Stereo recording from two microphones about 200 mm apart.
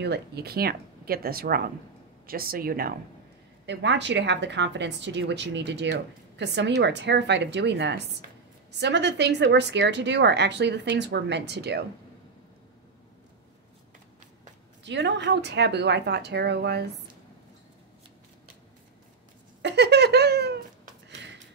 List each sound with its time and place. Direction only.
0.0 s speech: 55° right (ahead or behind)
3.6 s a woman's voice: 60° right (ahead or behind)
14.8 s a woman's voice: 60° right (ahead or behind)
19.6 s speech: 60° right (ahead or behind)